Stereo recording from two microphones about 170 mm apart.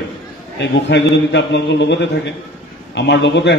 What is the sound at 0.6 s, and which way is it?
A man's voice, 90° left.